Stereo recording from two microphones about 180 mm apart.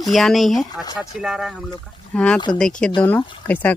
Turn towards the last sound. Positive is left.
turn(degrees=10)  # may be behind; listen again after turning